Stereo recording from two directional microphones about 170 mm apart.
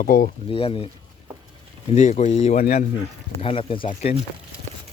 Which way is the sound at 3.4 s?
35° left (ahead or behind).